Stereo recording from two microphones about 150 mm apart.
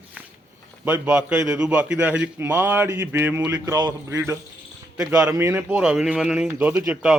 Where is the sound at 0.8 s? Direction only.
10° right (ahead or behind).